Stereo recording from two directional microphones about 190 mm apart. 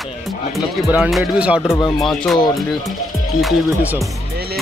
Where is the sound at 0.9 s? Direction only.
5° right (ahead or behind).